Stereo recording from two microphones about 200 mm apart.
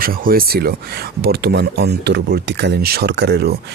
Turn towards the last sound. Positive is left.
turn(degrees=-55)  # may be behind; listen again after turning